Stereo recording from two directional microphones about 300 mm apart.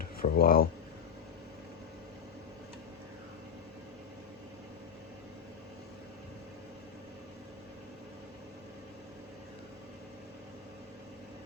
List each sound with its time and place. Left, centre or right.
0.2 s speech: left